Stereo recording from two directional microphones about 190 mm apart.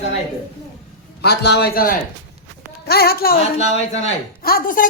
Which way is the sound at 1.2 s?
60° left (ahead or behind).